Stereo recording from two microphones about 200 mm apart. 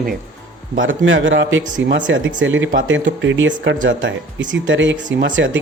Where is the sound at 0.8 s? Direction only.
75° right (ahead or behind).